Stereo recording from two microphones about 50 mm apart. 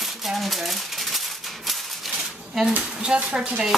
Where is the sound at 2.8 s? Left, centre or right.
Centre.